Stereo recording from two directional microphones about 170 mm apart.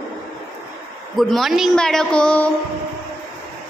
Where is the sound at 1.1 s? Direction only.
Centre (ahead or behind).